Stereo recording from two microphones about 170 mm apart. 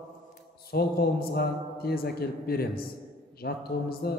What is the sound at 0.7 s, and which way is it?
A man's voice, 65° left (ahead or behind).